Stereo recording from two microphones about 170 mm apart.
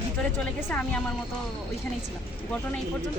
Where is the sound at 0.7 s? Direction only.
10° left (ahead or behind).